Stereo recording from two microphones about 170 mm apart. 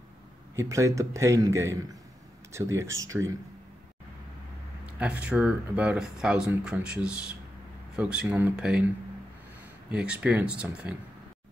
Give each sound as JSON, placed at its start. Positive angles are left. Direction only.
{"t": 0.6, "sound": "a man's voice", "side_deg": -20}
{"t": 4.8, "sound": "speech", "side_deg": -10}
{"t": 9.8, "sound": "a man's voice", "side_deg": -5}